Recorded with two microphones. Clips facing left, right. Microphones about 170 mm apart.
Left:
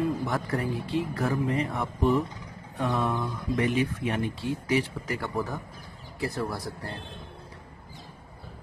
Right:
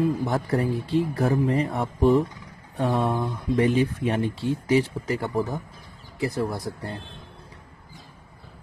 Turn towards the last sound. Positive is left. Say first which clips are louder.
# right 4 dB
turn(degrees=-20)  # may be behind; listen again after turning